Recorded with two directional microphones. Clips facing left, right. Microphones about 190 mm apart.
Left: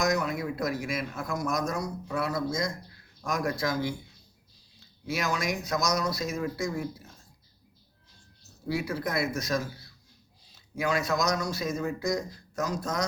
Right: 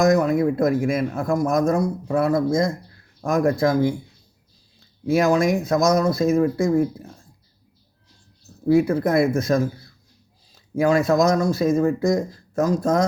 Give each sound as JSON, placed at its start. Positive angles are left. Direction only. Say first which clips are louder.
{"t": 0.0, "sound": "speech", "louder": "right 11 dB", "side_deg": -50}
{"t": 5.0, "sound": "speech", "louder": "right 12 dB", "side_deg": -50}
{"t": 8.6, "sound": "speech", "louder": "right 13 dB", "side_deg": -50}